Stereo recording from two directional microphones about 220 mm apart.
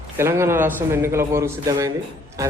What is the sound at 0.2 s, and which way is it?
A man's voice, 10° right (ahead or behind).